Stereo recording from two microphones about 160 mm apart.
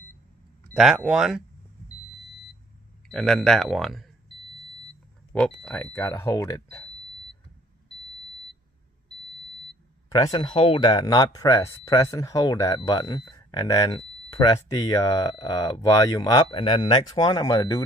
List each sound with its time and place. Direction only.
0.7 s speech: 5° right (ahead or behind)
3.1 s speech: centre (ahead or behind)
5.3 s speech: 5° left (ahead or behind); by 6.6 s 20° left (ahead or behind)
10.1 s speech: 25° left (ahead or behind)